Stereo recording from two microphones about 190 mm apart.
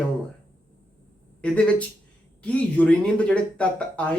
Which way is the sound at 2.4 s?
5° left (ahead or behind).